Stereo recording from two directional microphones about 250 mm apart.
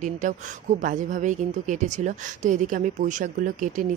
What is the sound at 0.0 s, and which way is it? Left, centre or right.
A woman's voice, right.